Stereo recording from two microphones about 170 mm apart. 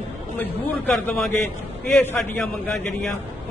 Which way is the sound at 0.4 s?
10° left (ahead or behind).